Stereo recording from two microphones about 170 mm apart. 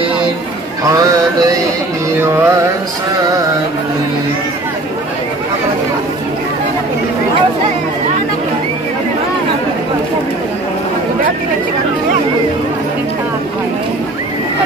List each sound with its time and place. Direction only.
2.1 s music: 15° right (ahead or behind)